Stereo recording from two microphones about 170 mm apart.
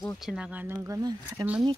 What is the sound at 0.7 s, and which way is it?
Speech, 20° right (ahead or behind).